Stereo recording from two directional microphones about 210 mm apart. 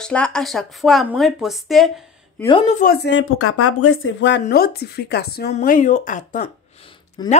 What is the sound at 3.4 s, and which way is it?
Speech, 90° left.